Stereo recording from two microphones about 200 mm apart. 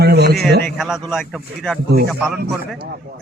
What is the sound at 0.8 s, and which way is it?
Speech, centre (ahead or behind).